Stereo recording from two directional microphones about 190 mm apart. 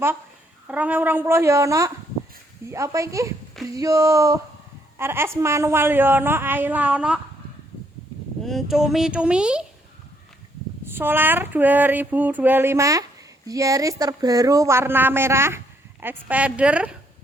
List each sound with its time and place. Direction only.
0.7 s speech: 10° right (ahead or behind)
8.4 s speech: centre (ahead or behind)
10.9 s speech: 10° right (ahead or behind)